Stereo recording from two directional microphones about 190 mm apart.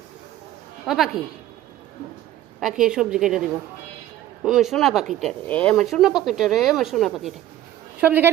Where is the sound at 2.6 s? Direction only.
5° right (ahead or behind).